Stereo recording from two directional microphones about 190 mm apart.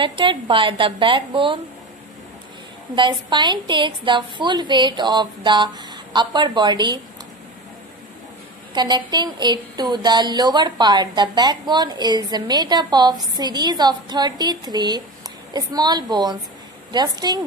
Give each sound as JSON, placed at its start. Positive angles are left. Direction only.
{"t": 0.0, "sound": "speech", "side_deg": -25}
{"t": 3.0, "sound": "speech", "side_deg": -25}
{"t": 8.7, "sound": "speech", "side_deg": -20}